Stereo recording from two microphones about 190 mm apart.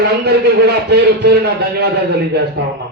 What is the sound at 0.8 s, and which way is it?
Speech, 60° right (ahead or behind).